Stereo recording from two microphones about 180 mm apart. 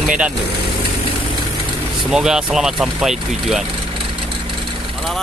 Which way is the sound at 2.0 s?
Centre (ahead or behind).